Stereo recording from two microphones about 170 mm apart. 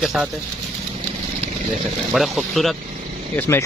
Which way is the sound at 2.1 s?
Centre (ahead or behind).